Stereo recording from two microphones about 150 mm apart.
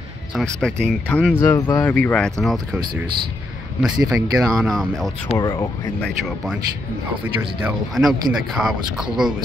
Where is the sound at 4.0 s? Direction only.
25° right (ahead or behind).